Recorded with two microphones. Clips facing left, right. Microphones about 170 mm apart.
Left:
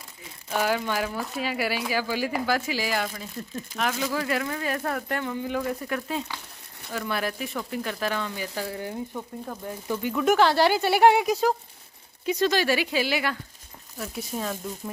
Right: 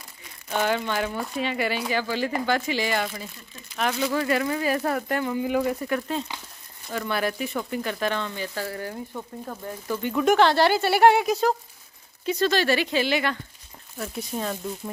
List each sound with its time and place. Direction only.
0.5 s speech: 5° left (ahead or behind)
9.1 s speech: 5° left (ahead or behind)